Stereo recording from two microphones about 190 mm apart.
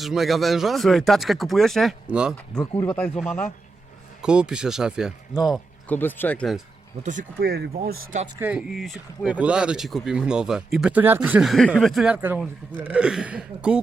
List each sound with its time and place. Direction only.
0.0 s speech: centre (ahead or behind)
2.8 s speech: 10° left (ahead or behind)
4.2 s speech: 5° right (ahead or behind)
5.9 s speech: 10° left (ahead or behind)
7.0 s speech: 40° right (ahead or behind)
7.9 s speech: 40° right (ahead or behind)
8.4 s speech: 5° right (ahead or behind)